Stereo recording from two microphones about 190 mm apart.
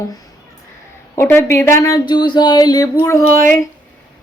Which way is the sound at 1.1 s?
15° left (ahead or behind).